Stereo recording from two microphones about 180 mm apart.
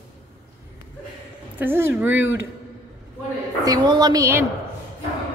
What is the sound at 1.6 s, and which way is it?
Speech, 10° right (ahead or behind).